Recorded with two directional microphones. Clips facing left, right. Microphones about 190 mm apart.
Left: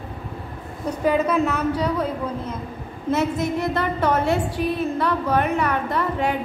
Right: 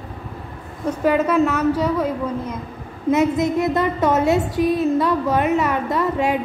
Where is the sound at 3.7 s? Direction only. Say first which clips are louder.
Right 3 dB; 20° right (ahead or behind).